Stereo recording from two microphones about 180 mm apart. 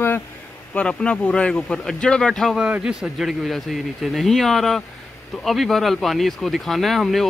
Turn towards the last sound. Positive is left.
turn(degrees=0)  # may be behind; listen again after turning